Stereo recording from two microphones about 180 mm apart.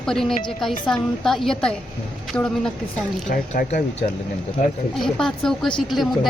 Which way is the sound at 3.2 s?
45° left (ahead or behind).